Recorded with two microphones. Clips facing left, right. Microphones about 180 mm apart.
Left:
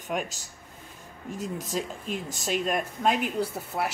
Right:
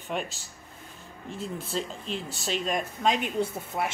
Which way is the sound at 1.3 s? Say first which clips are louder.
Left 1 dB; 40° left (ahead or behind).